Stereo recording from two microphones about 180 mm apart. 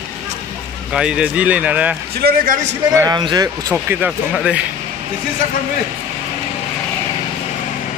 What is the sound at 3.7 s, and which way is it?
Speech, 5° right (ahead or behind).